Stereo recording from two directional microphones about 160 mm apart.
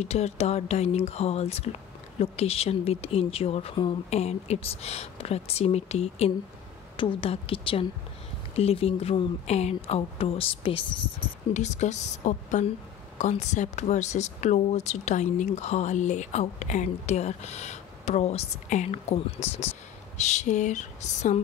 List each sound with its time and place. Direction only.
0.0 s speech: 45° left (ahead or behind)
11.5 s speech: 45° left (ahead or behind)